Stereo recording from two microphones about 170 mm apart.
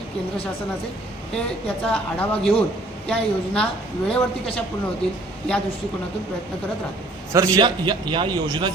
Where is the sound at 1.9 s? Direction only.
5° left (ahead or behind).